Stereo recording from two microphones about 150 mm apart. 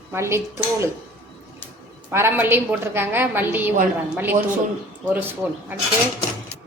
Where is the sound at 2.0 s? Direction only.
15° right (ahead or behind).